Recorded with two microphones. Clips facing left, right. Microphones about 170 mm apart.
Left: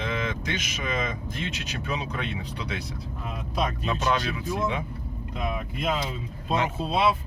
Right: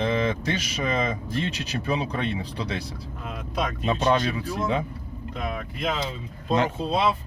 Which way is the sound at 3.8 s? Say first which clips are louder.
Right 8 dB; 30° right (ahead or behind).